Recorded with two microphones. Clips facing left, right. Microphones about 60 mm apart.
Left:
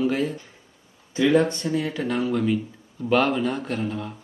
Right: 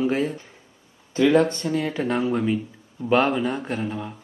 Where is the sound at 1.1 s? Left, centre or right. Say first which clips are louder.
Right 1 dB; right.